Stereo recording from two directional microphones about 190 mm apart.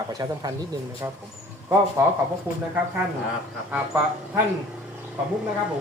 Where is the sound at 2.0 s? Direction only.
15° right (ahead or behind).